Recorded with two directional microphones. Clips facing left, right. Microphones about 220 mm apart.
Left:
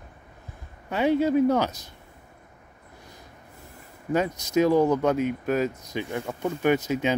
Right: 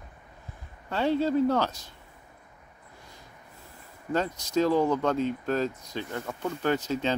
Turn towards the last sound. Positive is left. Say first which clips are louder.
# left 4 dB
turn(degrees=15)  # may be behind; listen again after turning